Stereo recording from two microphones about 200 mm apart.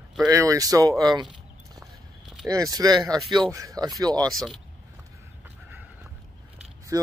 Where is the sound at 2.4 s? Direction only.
15° right (ahead or behind).